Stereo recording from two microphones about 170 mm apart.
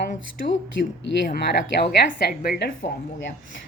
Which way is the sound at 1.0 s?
75° left (ahead or behind).